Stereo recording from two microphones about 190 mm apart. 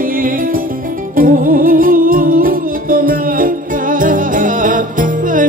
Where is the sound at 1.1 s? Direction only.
45° right (ahead or behind).